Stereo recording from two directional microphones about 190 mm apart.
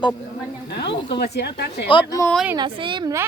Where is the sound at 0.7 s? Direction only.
60° left (ahead or behind).